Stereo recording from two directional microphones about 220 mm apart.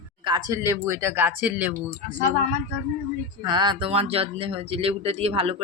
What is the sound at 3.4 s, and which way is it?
Speech, 20° right (ahead or behind).